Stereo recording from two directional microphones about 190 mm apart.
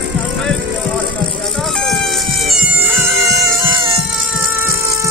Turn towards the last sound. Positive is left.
turn(degrees=0)  # may be behind; listen again after turning